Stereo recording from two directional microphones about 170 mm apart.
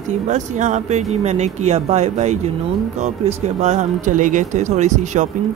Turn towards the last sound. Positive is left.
turn(degrees=-45)  # may be behind; listen again after turning